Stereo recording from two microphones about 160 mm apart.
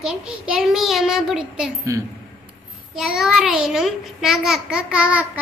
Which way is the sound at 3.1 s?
Centre (ahead or behind).